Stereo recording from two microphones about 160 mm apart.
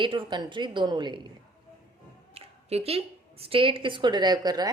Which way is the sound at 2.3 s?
40° right (ahead or behind).